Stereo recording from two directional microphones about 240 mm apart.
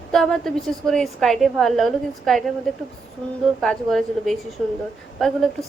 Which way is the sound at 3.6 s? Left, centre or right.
Centre.